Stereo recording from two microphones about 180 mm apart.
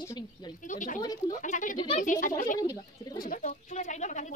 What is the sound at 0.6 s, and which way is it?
Speech, 45° left (ahead or behind).